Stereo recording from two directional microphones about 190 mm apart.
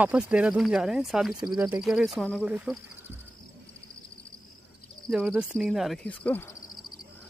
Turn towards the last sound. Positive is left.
turn(degrees=10)  # may be behind; listen again after turning